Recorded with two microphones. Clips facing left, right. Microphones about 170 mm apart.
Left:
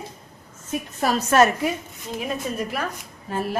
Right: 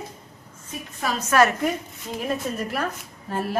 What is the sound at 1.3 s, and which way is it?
Speech, 25° left (ahead or behind).